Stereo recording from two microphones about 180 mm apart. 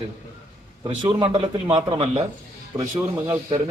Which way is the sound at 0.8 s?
25° right (ahead or behind).